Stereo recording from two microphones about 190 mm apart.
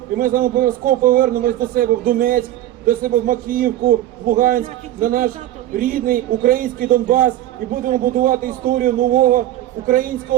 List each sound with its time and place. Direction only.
0.2 s a man's voice: 50° right (ahead or behind)